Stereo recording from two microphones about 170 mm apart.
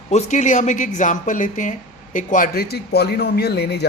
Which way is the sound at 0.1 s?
45° left (ahead or behind).